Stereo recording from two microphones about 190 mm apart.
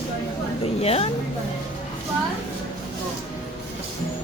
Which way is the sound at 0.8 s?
30° left (ahead or behind).